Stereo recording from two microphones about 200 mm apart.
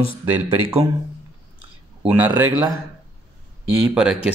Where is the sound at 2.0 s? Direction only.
10° right (ahead or behind).